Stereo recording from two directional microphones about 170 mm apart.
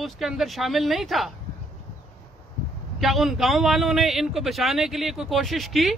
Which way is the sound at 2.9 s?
Centre (ahead or behind).